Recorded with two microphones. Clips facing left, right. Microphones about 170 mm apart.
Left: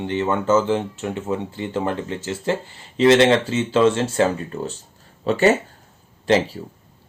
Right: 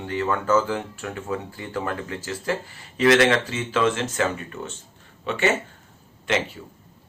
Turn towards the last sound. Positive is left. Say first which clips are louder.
# left 7 dB
turn(degrees=35)  # may be behind; listen again after turning